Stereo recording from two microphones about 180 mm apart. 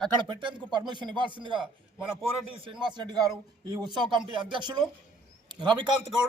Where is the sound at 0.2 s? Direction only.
25° right (ahead or behind).